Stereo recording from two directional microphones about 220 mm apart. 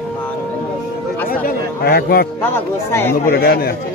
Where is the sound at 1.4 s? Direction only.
45° left (ahead or behind).